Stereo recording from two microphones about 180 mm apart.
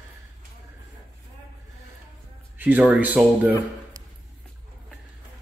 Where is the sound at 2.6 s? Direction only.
10° right (ahead or behind).